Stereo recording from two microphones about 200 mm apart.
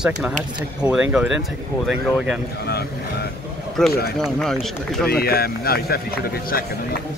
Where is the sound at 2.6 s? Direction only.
55° left (ahead or behind).